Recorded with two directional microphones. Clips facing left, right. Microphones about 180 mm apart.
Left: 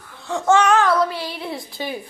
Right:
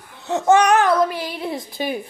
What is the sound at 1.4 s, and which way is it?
Speech, 15° right (ahead or behind).